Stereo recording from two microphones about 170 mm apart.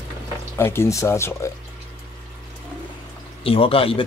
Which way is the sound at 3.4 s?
35° left (ahead or behind).